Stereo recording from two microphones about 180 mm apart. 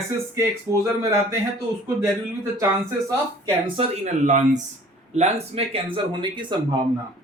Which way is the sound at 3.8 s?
40° right (ahead or behind).